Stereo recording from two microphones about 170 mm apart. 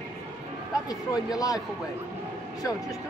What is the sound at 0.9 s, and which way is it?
Speech, 20° left (ahead or behind).